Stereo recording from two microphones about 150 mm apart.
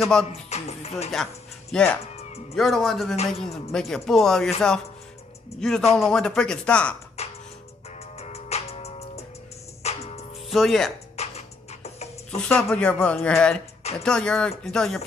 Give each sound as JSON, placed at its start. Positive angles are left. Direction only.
{"t": 0.0, "sound": "speech", "side_deg": 5}
{"t": 0.3, "sound": "music", "side_deg": 45}
{"t": 1.1, "sound": "speech", "side_deg": 5}
{"t": 5.6, "sound": "speech", "side_deg": 5}
{"t": 7.2, "sound": "music", "side_deg": 45}
{"t": 10.5, "sound": "speech", "side_deg": 0}
{"t": 11.1, "sound": "music", "side_deg": 45}
{"t": 12.6, "sound": "speech", "side_deg": 10}